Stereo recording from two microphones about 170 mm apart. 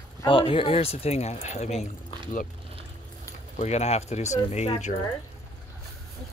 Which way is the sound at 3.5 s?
40° left (ahead or behind).